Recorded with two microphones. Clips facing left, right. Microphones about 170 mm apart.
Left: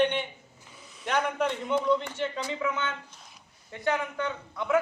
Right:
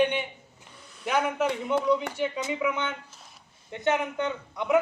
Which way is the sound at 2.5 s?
15° right (ahead or behind).